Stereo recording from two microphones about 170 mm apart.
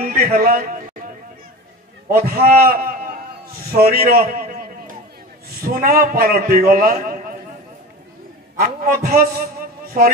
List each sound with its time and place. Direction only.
0.0 s a sound: 55° right (ahead or behind)
2.0 s a man's voice: 60° right (ahead or behind)
5.8 s a man's voice: 60° right (ahead or behind)
8.5 s a man's voice: 55° right (ahead or behind)